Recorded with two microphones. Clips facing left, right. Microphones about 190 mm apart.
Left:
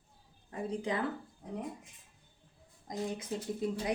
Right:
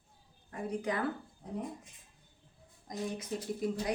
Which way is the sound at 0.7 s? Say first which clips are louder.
Right 1 dB; 25° left (ahead or behind).